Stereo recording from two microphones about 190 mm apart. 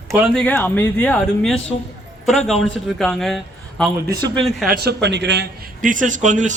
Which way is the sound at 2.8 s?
Centre (ahead or behind).